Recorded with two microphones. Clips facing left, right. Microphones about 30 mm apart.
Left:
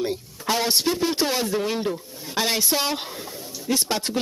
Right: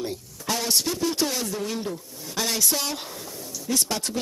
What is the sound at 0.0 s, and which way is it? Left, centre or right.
A man's voice, left.